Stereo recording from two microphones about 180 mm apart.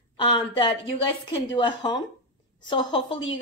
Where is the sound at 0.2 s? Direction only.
25° left (ahead or behind).